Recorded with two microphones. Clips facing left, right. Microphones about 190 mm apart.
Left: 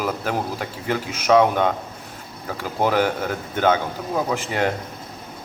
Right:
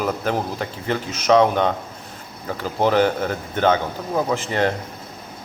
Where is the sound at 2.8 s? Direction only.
10° left (ahead or behind).